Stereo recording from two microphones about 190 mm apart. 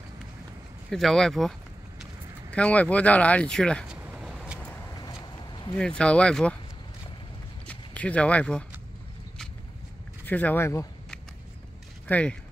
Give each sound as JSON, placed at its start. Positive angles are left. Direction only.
{"t": 0.8, "sound": "speech", "side_deg": 0}
{"t": 2.5, "sound": "speech", "side_deg": 5}
{"t": 4.9, "sound": "a sound", "side_deg": 20}
{"t": 5.8, "sound": "speech", "side_deg": 5}
{"t": 7.6, "sound": "a sound", "side_deg": 5}
{"t": 10.2, "sound": "speech", "side_deg": 10}
{"t": 12.1, "sound": "speech", "side_deg": 5}